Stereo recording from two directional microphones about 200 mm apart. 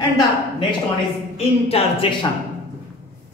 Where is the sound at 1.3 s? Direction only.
30° left (ahead or behind).